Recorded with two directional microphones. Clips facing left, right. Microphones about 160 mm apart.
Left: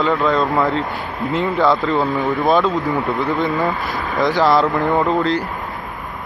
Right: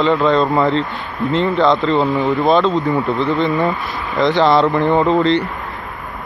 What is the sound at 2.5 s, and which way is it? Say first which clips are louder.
Speech: right 1 dB; 20° right (ahead or behind).